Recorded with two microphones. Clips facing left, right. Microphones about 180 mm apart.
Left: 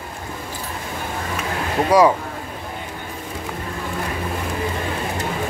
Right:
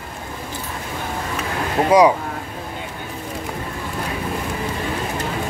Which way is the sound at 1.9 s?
20° right (ahead or behind).